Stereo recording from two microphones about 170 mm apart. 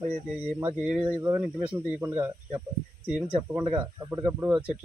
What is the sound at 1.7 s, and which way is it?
Speech, 10° right (ahead or behind).